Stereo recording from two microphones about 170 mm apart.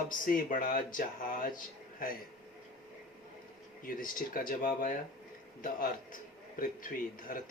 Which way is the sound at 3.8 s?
55° left (ahead or behind).